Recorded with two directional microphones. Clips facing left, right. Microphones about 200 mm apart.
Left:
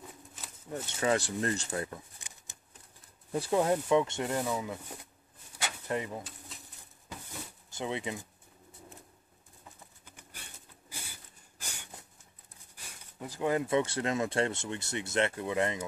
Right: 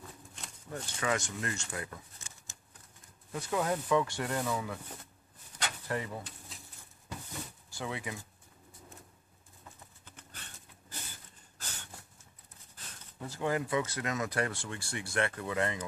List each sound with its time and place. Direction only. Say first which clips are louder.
0.0 s a sound: left 1 dB; 5° left (ahead or behind)
0.8 s speech: left 4 dB; 25° left (ahead or behind)
3.3 s speech: left 5 dB; 30° left (ahead or behind)
5.5 s a sound: even; 10° left (ahead or behind)
5.9 s speech: left 3 dB; 20° left (ahead or behind)
6.5 s bird: left 1 dB; centre (ahead or behind)
7.7 s speech: left 4 dB; 20° left (ahead or behind)
10.0 s a sound: even; 10° left (ahead or behind)
12.7 s speech: left 1 dB; 10° left (ahead or behind)